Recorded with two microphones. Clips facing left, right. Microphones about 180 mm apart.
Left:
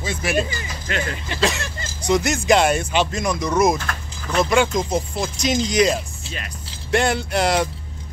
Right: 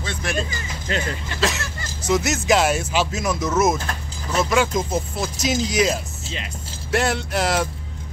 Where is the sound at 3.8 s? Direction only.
30° right (ahead or behind).